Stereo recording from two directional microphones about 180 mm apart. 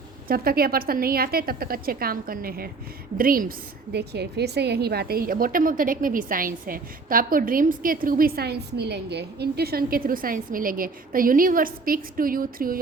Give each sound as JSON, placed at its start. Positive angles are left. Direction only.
{"t": 0.3, "sound": "a woman's voice", "side_deg": -55}
{"t": 3.9, "sound": "a woman's voice", "side_deg": -65}